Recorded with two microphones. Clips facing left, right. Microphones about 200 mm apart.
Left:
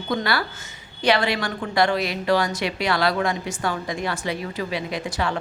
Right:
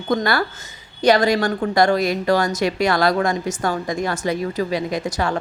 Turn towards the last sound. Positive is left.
turn(degrees=-45)  # may be behind; listen again after turning